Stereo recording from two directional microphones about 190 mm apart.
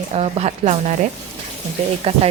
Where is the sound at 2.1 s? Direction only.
35° right (ahead or behind).